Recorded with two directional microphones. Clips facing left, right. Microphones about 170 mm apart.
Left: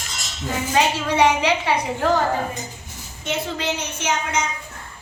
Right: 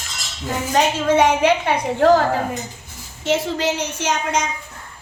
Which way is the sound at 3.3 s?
90° right.